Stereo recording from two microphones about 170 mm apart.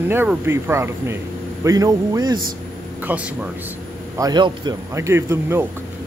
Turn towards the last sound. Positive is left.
turn(degrees=-15)  # may be behind; listen again after turning